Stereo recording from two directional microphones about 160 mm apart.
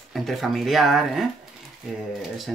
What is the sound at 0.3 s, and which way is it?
Speech, centre (ahead or behind).